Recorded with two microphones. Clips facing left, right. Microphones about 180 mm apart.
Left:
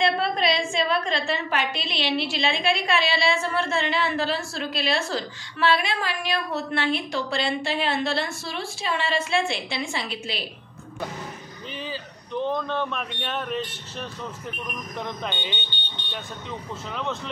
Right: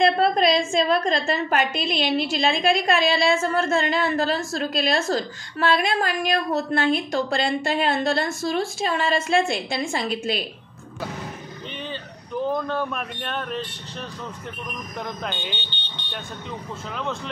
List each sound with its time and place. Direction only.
0.0 s a woman's voice: 45° right (ahead or behind)
12.4 s speech: 5° right (ahead or behind)
15.2 s speech: centre (ahead or behind)
16.9 s speech: centre (ahead or behind)